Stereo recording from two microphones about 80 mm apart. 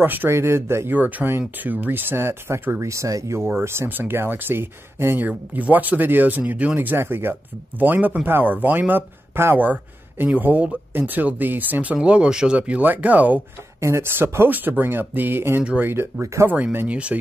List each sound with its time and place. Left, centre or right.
0.0 s speech: right
0.9 s speech: right
2.8 s speech: right; by 13.4 s centre
13.7 s speech: right
15.6 s speech: centre
15.9 s speech: right
16.4 s speech: right